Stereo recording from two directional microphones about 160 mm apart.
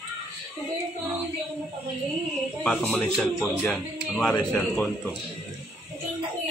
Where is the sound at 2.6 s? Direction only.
5° left (ahead or behind).